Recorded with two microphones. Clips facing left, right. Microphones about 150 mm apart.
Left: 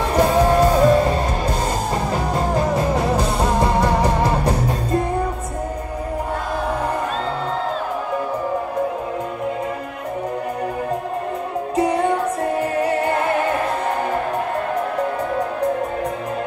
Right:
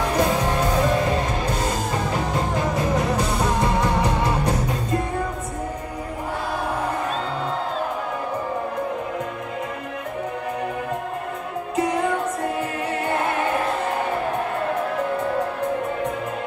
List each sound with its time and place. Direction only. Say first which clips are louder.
0.1 s music: left 9 dB; 35° left (ahead or behind)